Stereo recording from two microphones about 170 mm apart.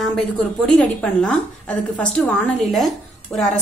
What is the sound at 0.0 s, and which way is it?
A woman's voice, 5° left (ahead or behind).